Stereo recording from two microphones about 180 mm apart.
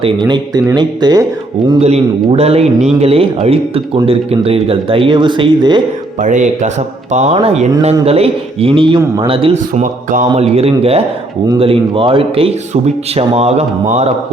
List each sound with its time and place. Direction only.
0.0 s speech: 25° right (ahead or behind)
1.8 s a man's voice: 35° right (ahead or behind)
6.1 s a man's voice: 45° right (ahead or behind)